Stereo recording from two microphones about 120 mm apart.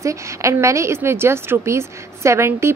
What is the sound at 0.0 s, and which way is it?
A woman's voice, 25° right (ahead or behind).